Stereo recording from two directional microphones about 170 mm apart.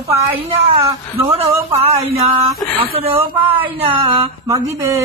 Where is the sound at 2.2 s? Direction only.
35° right (ahead or behind).